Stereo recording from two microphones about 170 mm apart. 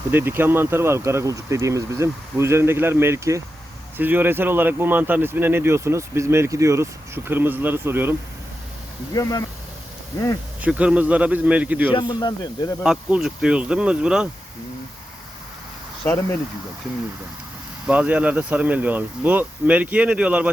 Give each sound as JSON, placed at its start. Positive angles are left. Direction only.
{"t": 0.1, "sound": "speech", "side_deg": -15}
{"t": 10.1, "sound": "speech", "side_deg": 20}
{"t": 10.6, "sound": "speech", "side_deg": -5}
{"t": 11.9, "sound": "speech", "side_deg": 30}
{"t": 12.8, "sound": "speech", "side_deg": -5}
{"t": 16.0, "sound": "speech", "side_deg": 10}
{"t": 17.8, "sound": "speech", "side_deg": -10}